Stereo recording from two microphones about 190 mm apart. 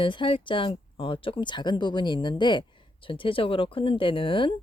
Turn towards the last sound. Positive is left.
turn(degrees=25)  # may be behind; listen again after turning